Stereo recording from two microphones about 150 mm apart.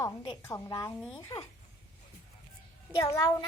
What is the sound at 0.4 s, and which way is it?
A child's voice, 20° left (ahead or behind).